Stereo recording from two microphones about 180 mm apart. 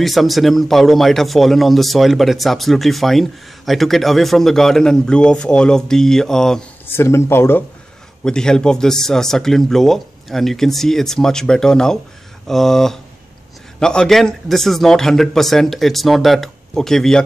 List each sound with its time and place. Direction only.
0.0 s a man's voice: centre (ahead or behind)
7.0 s a man's voice: 15° left (ahead or behind)